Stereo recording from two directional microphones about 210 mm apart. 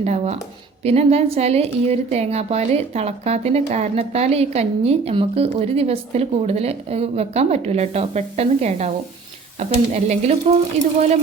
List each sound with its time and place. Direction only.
0.0 s a woman's voice: 30° right (ahead or behind)